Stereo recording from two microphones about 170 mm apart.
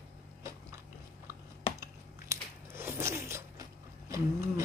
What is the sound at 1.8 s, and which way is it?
Biting, 15° right (ahead or behind).